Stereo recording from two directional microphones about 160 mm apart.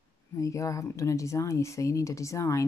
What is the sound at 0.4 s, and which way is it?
Speech, 20° left (ahead or behind).